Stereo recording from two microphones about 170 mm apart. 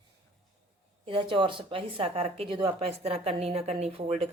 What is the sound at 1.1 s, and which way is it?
Speech, 30° right (ahead or behind).